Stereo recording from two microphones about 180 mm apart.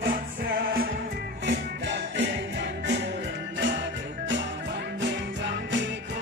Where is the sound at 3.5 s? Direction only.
85° right.